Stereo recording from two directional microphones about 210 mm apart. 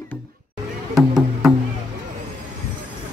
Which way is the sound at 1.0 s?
Centre (ahead or behind).